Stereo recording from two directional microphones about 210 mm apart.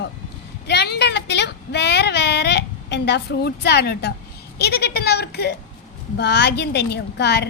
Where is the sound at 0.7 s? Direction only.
55° left (ahead or behind).